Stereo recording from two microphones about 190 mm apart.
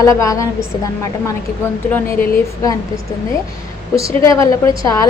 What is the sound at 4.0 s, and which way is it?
A woman's voice, 15° left (ahead or behind).